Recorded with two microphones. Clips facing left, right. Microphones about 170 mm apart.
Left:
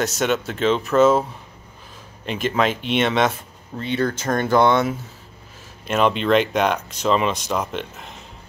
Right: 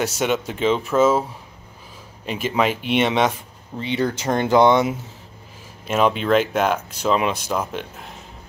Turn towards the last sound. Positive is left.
turn(degrees=-10)  # may be behind; listen again after turning